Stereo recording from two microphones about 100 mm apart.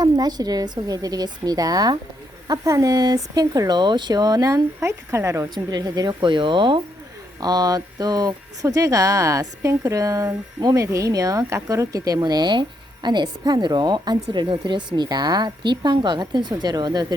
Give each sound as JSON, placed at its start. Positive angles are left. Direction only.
{"t": 0.0, "sound": "speech", "side_deg": -40}
{"t": 7.3, "sound": "a woman's voice", "side_deg": -40}